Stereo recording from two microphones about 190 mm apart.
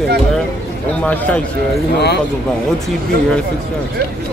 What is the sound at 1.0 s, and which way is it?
Speech, 5° left (ahead or behind).